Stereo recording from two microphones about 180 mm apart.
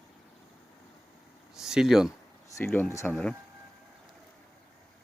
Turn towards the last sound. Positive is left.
turn(degrees=5)  # may be behind; listen again after turning